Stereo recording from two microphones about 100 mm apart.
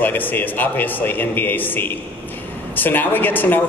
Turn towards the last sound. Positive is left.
turn(degrees=20)  # may be behind; listen again after turning